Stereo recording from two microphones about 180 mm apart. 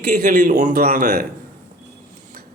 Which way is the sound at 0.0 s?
50° right (ahead or behind).